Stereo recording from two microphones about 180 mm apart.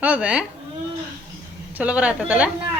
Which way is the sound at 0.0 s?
5° right (ahead or behind).